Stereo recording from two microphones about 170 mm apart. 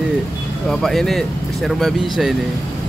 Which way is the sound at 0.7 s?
Centre (ahead or behind).